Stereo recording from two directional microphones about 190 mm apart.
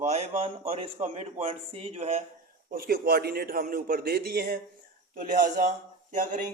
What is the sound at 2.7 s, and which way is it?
A man's voice, 55° right (ahead or behind).